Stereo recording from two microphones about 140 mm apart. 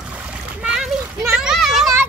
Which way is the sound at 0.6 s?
5° right (ahead or behind).